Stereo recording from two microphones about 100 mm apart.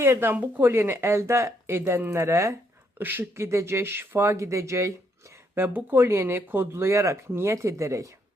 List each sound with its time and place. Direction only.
0.0 s speech: 25° right (ahead or behind)
5.5 s speech: 20° right (ahead or behind)